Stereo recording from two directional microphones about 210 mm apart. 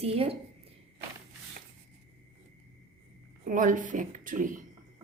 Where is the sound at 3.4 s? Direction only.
40° right (ahead or behind).